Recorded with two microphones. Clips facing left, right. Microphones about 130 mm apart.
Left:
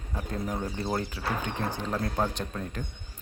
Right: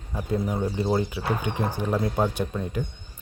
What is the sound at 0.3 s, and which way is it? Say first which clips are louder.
Speech: right 7 dB; 5° right (ahead or behind).